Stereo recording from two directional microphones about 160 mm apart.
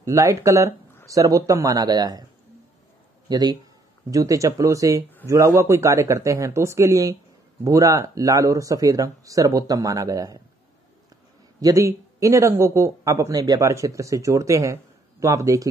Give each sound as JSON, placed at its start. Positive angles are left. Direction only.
{"t": 0.0, "sound": "speech", "side_deg": -20}
{"t": 3.3, "sound": "a man's voice", "side_deg": -25}
{"t": 11.6, "sound": "speech", "side_deg": -20}